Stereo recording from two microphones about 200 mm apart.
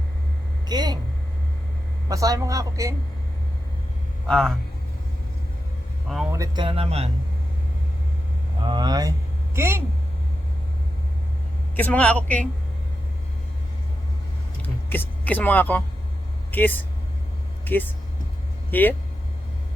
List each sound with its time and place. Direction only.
0.7 s speech: 20° right (ahead or behind)
2.0 s a woman's voice: 15° right (ahead or behind)
4.3 s a man's voice: 5° left (ahead or behind)
6.3 s speech: 20° right (ahead or behind)
8.6 s a woman's voice: 20° right (ahead or behind)
11.8 s a woman's voice: 5° left (ahead or behind)
14.6 s a woman's voice: 10° left (ahead or behind)